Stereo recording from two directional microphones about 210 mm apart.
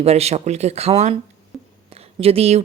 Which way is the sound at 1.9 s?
30° right (ahead or behind).